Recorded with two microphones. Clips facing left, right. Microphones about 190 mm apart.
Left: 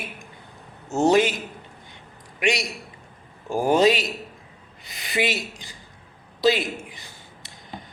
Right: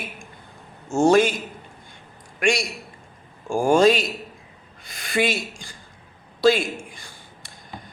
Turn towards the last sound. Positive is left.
turn(degrees=20)  # may be behind; listen again after turning